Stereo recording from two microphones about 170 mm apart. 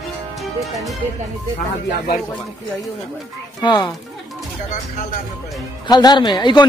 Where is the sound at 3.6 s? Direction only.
25° left (ahead or behind).